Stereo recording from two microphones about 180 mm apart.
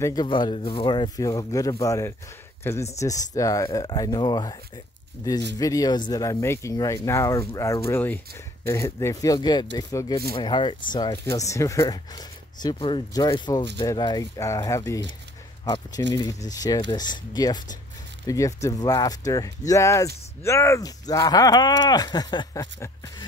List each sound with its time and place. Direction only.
0.0 s speech: 20° left (ahead or behind)
5.6 s speech: 20° left (ahead or behind)